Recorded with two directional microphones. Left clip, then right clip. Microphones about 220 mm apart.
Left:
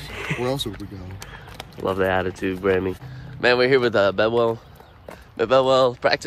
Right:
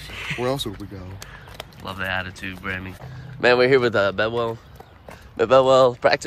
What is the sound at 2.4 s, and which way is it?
Speech, 30° left (ahead or behind).